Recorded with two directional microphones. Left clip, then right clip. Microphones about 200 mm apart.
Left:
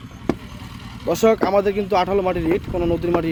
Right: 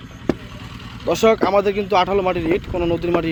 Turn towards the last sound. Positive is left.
turn(degrees=25)  # may be behind; listen again after turning